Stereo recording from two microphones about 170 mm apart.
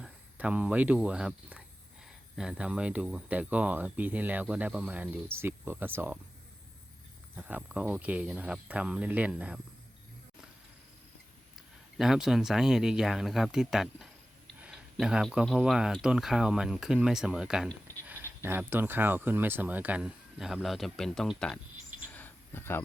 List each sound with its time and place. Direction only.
0.0 s speech: 5° right (ahead or behind)
7.3 s speech: 10° right (ahead or behind)
11.9 s speech: centre (ahead or behind)
22.1 s cricket: 10° left (ahead or behind)